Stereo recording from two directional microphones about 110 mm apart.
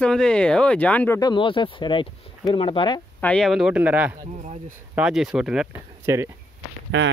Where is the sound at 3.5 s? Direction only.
5° right (ahead or behind).